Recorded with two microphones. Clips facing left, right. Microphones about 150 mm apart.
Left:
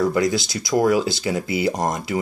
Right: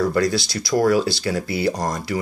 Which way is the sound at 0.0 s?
15° left (ahead or behind).